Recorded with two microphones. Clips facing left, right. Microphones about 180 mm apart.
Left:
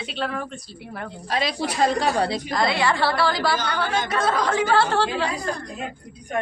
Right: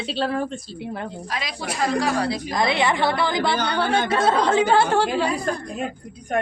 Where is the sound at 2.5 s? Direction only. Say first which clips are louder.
Right 1 dB; 20° right (ahead or behind).